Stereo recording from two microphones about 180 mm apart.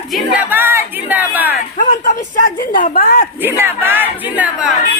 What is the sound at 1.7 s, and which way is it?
Speech, 45° left (ahead or behind).